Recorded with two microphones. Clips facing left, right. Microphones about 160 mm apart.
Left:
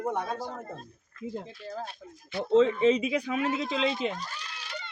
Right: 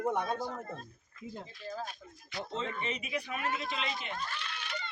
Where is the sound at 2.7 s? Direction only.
90° left.